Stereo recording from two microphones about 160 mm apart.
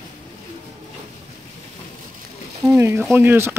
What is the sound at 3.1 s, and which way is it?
Speech, 15° right (ahead or behind).